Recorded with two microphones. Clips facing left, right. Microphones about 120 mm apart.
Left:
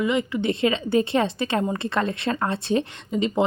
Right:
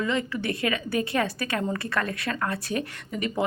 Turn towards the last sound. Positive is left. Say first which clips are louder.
# left 6 dB
turn(degrees=25)  # may be behind; listen again after turning